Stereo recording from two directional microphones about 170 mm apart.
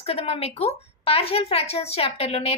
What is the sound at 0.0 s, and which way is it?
A woman's voice, 35° left (ahead or behind).